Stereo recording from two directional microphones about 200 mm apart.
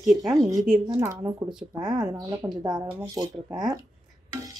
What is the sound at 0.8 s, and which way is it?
Speech, 15° right (ahead or behind).